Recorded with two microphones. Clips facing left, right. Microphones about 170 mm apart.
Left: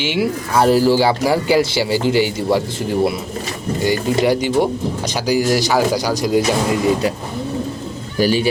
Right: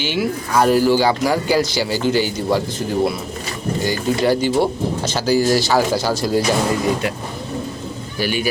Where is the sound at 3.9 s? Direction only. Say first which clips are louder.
Left 2 dB; 20° left (ahead or behind).